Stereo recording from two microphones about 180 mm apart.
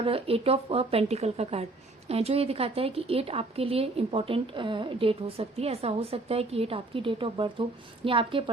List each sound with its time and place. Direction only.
0.0 s a woman's voice: 30° right (ahead or behind)